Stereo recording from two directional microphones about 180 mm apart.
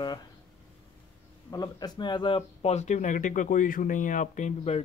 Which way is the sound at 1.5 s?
20° left (ahead or behind).